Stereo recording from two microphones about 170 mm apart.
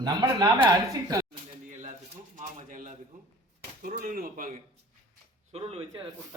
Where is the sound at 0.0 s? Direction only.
25° right (ahead or behind).